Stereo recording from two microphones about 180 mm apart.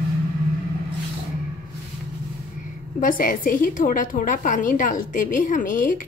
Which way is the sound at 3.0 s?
50° left (ahead or behind).